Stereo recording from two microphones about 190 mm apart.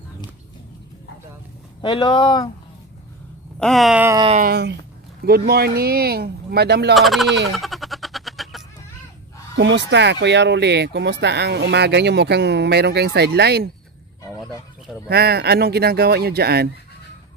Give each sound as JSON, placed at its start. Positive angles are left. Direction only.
{"t": 1.8, "sound": "speech", "side_deg": 25}
{"t": 3.5, "sound": "speech", "side_deg": 0}
{"t": 4.4, "sound": "speech", "side_deg": -55}
{"t": 7.0, "sound": "speech", "side_deg": 0}
{"t": 7.5, "sound": "a sound", "side_deg": 0}
{"t": 9.6, "sound": "speech", "side_deg": -70}
{"t": 15.0, "sound": "speech", "side_deg": -55}